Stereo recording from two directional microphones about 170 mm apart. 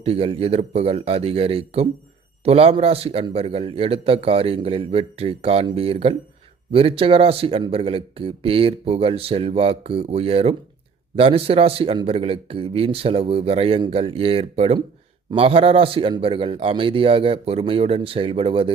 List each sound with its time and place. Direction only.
0.0 s speech: 35° right (ahead or behind)